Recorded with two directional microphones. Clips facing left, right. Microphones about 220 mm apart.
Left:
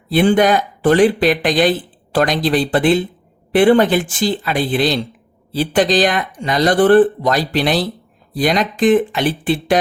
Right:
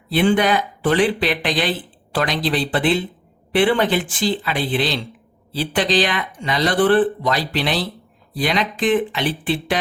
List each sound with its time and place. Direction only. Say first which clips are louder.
0.1 s speech: left 4 dB; 45° left (ahead or behind)